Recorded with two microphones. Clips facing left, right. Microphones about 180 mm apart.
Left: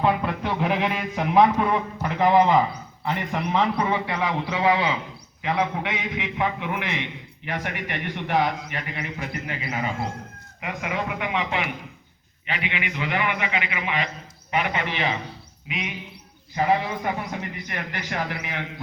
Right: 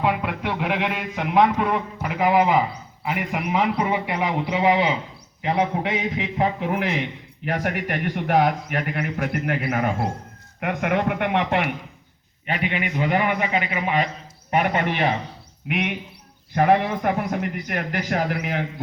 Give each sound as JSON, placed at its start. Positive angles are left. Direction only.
{"t": 0.0, "sound": "a man's voice", "side_deg": -5}
{"t": 12.5, "sound": "a man's voice", "side_deg": -45}